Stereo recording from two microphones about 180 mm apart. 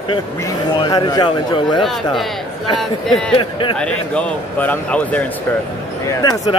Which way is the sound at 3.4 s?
25° left (ahead or behind).